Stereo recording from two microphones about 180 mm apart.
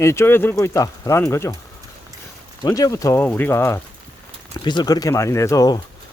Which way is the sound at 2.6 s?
15° left (ahead or behind).